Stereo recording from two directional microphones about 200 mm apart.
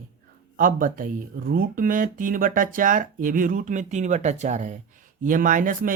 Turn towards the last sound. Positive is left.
turn(degrees=-40)  # may be behind; listen again after turning